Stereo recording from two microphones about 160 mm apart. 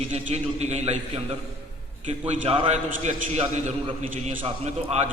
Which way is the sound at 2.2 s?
45° right (ahead or behind).